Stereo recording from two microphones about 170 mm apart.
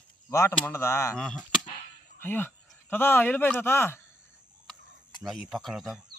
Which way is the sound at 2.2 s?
10° left (ahead or behind).